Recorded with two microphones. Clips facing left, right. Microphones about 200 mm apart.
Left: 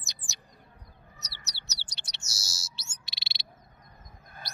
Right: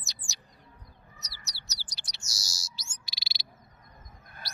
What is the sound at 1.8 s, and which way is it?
Chirp, 25° left (ahead or behind).